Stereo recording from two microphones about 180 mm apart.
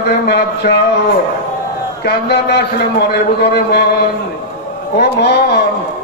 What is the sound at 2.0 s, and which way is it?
A man's voice, 65° left (ahead or behind).